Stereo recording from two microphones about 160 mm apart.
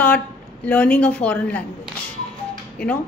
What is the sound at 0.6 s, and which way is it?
A woman's voice, 10° left (ahead or behind).